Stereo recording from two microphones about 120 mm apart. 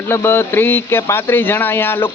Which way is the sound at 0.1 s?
20° left (ahead or behind).